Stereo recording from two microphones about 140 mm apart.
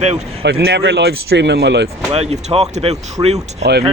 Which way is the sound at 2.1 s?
45° right (ahead or behind).